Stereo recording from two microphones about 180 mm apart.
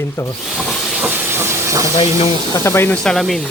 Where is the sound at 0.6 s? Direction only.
Centre (ahead or behind).